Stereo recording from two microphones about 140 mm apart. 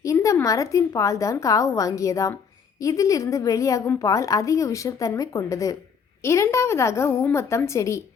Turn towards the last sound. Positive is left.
turn(degrees=20)  # may be behind; listen again after turning